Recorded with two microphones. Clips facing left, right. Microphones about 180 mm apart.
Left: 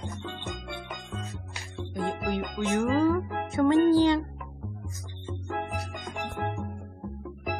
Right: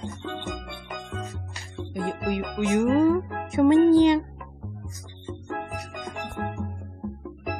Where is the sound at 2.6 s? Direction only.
15° right (ahead or behind).